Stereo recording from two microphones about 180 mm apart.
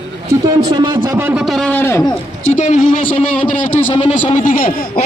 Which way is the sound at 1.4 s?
5° left (ahead or behind).